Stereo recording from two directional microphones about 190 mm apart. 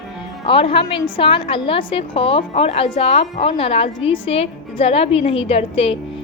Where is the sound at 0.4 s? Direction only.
30° left (ahead or behind).